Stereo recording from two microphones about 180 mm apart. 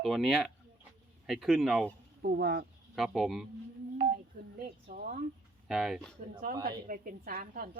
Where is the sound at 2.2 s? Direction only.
65° right (ahead or behind).